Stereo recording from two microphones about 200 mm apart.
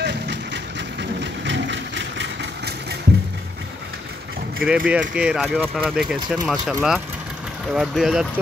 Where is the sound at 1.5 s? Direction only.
65° right (ahead or behind).